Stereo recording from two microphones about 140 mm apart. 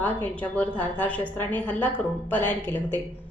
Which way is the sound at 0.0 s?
10° left (ahead or behind).